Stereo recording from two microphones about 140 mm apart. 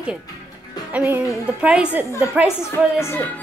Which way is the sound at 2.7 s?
15° left (ahead or behind).